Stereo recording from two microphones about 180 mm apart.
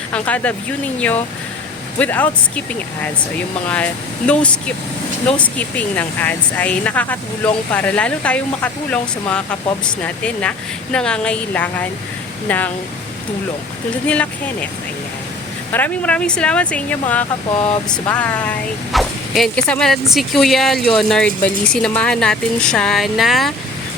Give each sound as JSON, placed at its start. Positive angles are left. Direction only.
{"t": 0.1, "sound": "speech", "side_deg": 10}
{"t": 14.1, "sound": "speech", "side_deg": 5}
{"t": 15.7, "sound": "speech", "side_deg": 10}
{"t": 17.6, "sound": "speech", "side_deg": 30}
{"t": 18.1, "sound": "speech", "side_deg": 10}